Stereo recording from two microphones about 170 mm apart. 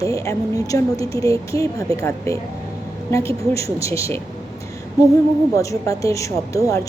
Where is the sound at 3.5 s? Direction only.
20° left (ahead or behind).